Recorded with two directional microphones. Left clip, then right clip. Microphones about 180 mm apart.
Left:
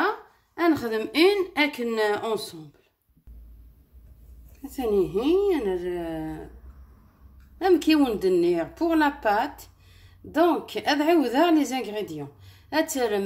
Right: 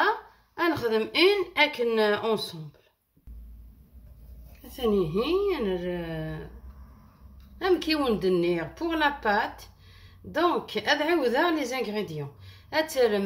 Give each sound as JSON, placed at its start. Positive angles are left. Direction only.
{"t": 0.6, "sound": "speech", "side_deg": 45}
{"t": 4.7, "sound": "a woman's voice", "side_deg": 35}
{"t": 7.5, "sound": "a woman's voice", "side_deg": 35}